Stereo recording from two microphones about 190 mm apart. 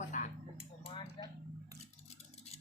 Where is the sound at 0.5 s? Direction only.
30° left (ahead or behind).